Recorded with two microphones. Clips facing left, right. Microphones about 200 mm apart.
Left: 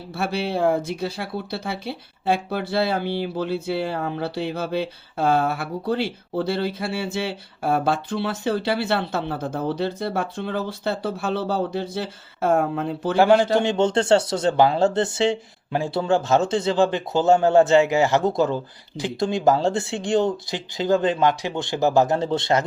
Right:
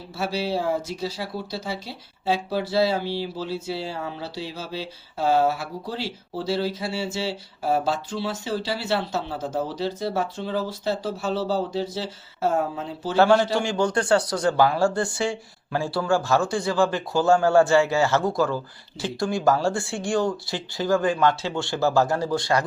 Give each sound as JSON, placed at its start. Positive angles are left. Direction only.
{"t": 0.1, "sound": "speech", "side_deg": 55}
{"t": 13.1, "sound": "a man's voice", "side_deg": 15}